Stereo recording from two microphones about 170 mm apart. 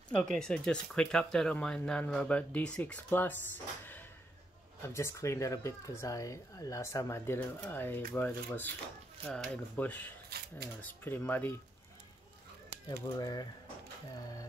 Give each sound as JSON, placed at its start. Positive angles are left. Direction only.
{"t": 0.1, "sound": "speech", "side_deg": 5}
{"t": 13.0, "sound": "speech", "side_deg": 20}